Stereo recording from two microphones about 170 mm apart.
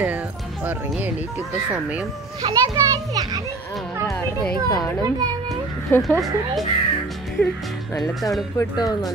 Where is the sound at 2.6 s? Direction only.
20° right (ahead or behind).